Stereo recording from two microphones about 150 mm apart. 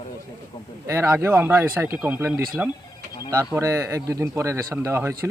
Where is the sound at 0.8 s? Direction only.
20° right (ahead or behind).